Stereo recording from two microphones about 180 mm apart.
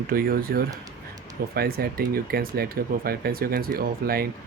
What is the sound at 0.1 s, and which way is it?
Speech, 55° right (ahead or behind).